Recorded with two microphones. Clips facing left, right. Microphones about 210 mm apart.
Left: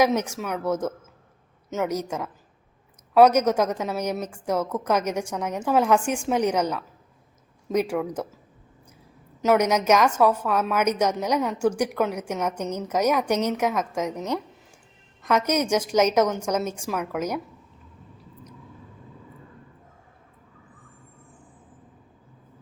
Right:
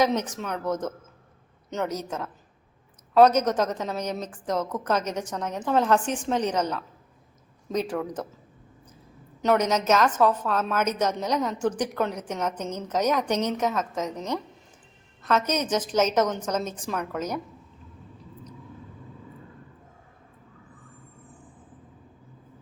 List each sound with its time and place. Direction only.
0.0 s a woman's voice: 10° left (ahead or behind)
9.4 s a woman's voice: 10° left (ahead or behind)